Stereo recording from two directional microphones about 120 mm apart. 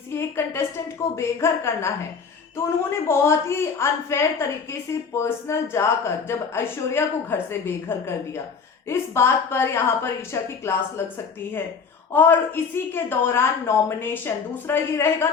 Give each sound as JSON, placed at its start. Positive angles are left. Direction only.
{"t": 0.1, "sound": "a woman's voice", "side_deg": 20}
{"t": 2.9, "sound": "a woman's voice", "side_deg": 20}
{"t": 12.1, "sound": "a woman's voice", "side_deg": 15}